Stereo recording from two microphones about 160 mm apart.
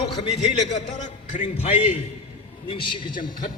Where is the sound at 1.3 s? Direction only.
50° left (ahead or behind).